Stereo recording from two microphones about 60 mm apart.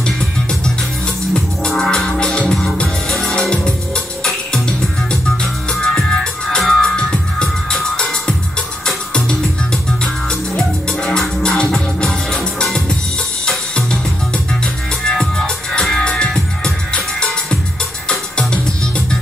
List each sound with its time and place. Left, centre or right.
0.0 s music: centre
14.3 s music: centre